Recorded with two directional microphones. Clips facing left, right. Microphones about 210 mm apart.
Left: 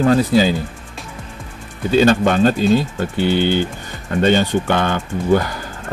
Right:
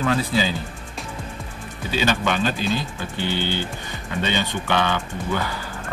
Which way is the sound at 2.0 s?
50° left (ahead or behind).